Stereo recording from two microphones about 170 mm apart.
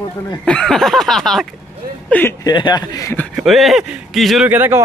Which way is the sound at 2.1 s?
15° left (ahead or behind).